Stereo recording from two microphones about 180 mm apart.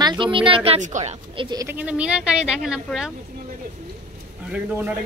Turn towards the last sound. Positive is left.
turn(degrees=-5)  # may be behind; listen again after turning